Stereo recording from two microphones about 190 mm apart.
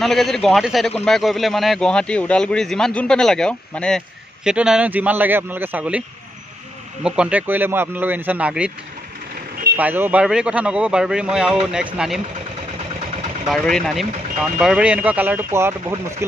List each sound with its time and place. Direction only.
0.0 s a man's voice: centre (ahead or behind)
9.8 s a man's voice: 10° right (ahead or behind)
13.5 s speech: centre (ahead or behind); by 16.3 s 15° right (ahead or behind)